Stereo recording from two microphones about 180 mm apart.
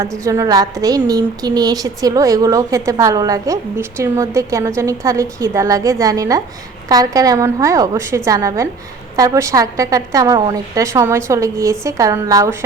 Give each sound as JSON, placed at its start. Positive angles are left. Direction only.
{"t": 0.3, "sound": "a woman's voice", "side_deg": -20}